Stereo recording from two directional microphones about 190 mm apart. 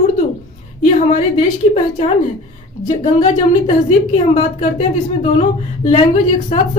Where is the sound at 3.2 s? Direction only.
40° left (ahead or behind).